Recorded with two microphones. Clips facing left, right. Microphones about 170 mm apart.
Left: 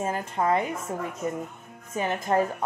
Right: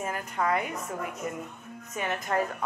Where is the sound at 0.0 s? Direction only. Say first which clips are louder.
Left 4 dB; 25° left (ahead or behind).